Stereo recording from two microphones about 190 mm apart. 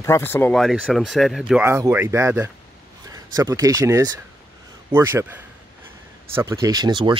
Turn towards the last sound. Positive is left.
turn(degrees=-25)  # may be behind; listen again after turning